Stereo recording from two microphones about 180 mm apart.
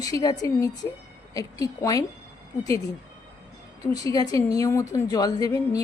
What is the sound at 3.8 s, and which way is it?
A woman's voice, 20° left (ahead or behind).